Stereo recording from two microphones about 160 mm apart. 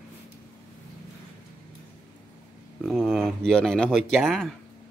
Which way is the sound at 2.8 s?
Centre (ahead or behind).